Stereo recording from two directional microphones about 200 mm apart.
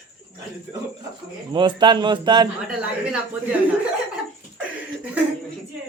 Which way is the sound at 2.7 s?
5° right (ahead or behind).